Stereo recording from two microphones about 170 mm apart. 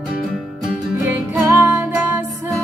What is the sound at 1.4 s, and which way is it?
Music, 15° right (ahead or behind).